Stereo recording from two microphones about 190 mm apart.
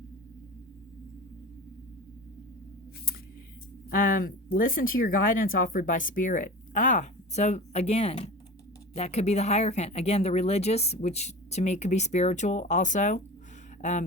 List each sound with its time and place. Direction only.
3.8 s speech: 45° left (ahead or behind)